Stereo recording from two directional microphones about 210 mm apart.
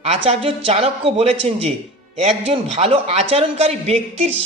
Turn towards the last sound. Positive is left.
turn(degrees=-30)  # may be behind; listen again after turning